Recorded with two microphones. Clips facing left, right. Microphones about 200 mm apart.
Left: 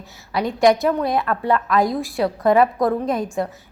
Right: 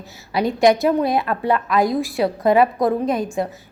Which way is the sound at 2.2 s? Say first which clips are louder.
Even; 20° right (ahead or behind).